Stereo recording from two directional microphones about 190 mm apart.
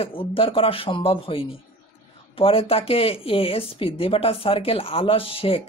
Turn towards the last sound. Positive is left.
turn(degrees=30)  # may be behind; listen again after turning